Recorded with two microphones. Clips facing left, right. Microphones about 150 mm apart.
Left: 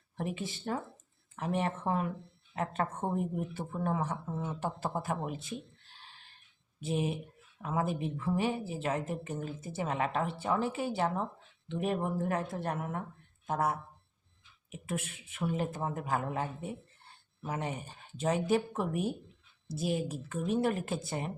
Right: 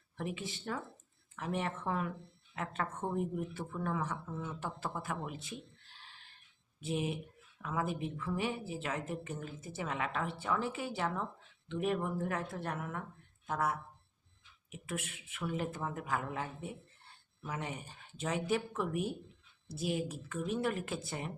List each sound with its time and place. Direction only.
0.2 s speech: 40° left (ahead or behind)